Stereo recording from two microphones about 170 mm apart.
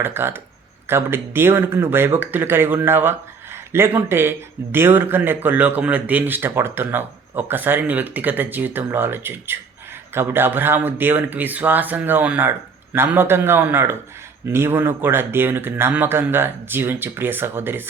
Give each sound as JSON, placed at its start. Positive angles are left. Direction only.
{"t": 0.0, "sound": "speech", "side_deg": -15}